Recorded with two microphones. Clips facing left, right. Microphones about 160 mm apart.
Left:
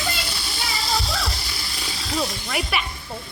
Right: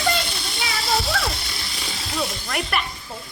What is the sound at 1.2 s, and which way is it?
Music, centre (ahead or behind).